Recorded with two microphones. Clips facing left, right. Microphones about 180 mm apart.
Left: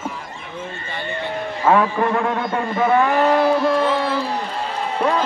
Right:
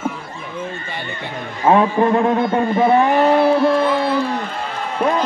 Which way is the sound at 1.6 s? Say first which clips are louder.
Right 3 dB; 25° right (ahead or behind).